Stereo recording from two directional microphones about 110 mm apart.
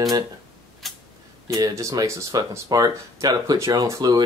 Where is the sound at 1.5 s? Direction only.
30° right (ahead or behind).